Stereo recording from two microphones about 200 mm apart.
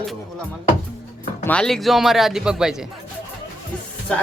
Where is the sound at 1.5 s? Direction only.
5° left (ahead or behind).